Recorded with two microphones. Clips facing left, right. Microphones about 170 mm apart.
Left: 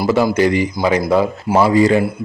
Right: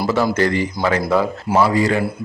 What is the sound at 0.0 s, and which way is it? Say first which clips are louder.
A man's voice: left 3 dB; 10° left (ahead or behind).